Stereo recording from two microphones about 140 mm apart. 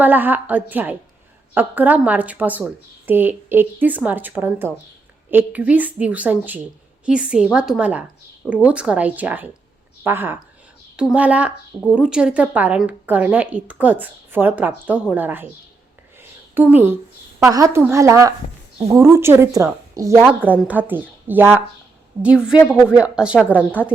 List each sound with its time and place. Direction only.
0.0 s a woman's voice: 15° right (ahead or behind)
16.6 s a woman's voice: 15° right (ahead or behind)